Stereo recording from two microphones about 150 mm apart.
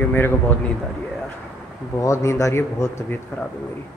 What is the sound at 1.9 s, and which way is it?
A man's voice, 20° left (ahead or behind).